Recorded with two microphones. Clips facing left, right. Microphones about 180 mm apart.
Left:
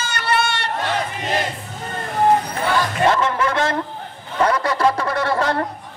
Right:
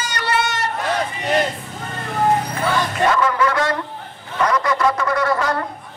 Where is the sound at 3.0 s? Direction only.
30° left (ahead or behind).